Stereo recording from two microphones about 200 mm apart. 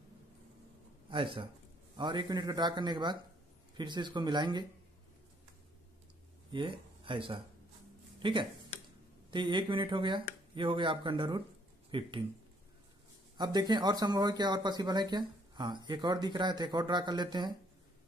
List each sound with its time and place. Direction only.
1.1 s speech: 25° right (ahead or behind)
6.5 s speech: 25° right (ahead or behind)
13.4 s speech: 20° right (ahead or behind)